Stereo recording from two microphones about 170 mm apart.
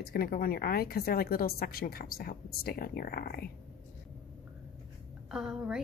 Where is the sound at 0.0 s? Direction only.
60° left (ahead or behind).